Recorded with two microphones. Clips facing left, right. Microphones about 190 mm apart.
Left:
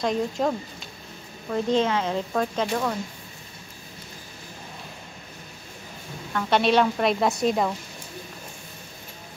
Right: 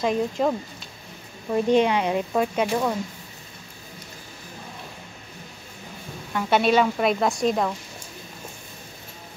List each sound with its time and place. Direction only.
0.0 s a woman's voice: 5° right (ahead or behind)
1.5 s speech: 15° right (ahead or behind)
6.3 s a woman's voice: 5° right (ahead or behind)